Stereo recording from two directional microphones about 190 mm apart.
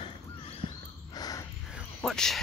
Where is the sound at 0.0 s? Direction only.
30° left (ahead or behind).